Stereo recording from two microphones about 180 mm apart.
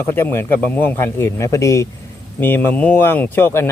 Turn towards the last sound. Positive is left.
turn(degrees=15)  # may be behind; listen again after turning